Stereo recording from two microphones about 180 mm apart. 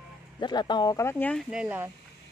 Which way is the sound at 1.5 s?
5° right (ahead or behind).